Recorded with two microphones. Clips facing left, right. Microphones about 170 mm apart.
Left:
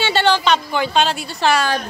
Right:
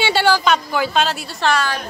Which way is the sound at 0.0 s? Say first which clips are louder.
Even; 10° right (ahead or behind).